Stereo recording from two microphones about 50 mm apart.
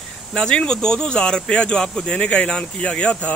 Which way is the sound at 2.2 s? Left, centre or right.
Left.